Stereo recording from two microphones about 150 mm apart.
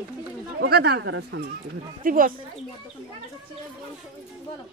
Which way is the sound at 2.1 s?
65° right (ahead or behind).